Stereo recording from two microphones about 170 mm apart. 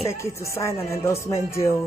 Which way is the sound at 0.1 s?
15° left (ahead or behind).